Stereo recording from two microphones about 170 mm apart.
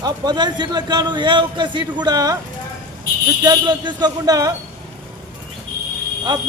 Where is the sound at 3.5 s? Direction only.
25° right (ahead or behind).